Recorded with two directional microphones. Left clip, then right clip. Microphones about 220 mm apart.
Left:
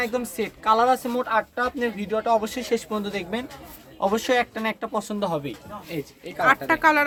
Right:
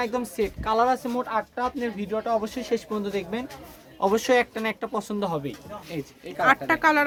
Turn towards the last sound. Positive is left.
turn(degrees=-10)  # may be behind; listen again after turning